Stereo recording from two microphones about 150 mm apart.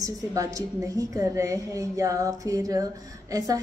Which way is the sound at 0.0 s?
25° right (ahead or behind).